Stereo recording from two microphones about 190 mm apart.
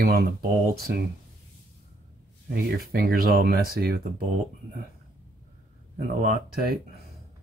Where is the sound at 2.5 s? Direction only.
50° right (ahead or behind).